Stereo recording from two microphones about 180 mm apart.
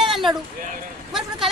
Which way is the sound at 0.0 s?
Centre (ahead or behind).